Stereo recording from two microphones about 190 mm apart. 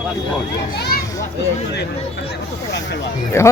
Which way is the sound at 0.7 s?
60° left (ahead or behind).